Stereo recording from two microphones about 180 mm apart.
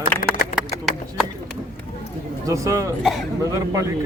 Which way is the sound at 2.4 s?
15° right (ahead or behind).